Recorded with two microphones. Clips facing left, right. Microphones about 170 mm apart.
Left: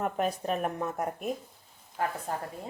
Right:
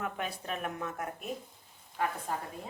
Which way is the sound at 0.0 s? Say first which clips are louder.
Left 7 dB; 40° left (ahead or behind).